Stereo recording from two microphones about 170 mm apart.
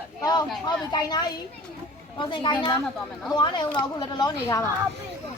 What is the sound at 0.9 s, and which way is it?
Speech, 25° left (ahead or behind).